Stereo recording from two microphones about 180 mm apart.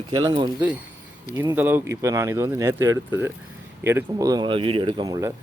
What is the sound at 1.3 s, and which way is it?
Speech, 15° right (ahead or behind).